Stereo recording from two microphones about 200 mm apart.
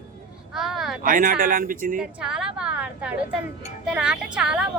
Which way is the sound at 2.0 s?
5° right (ahead or behind).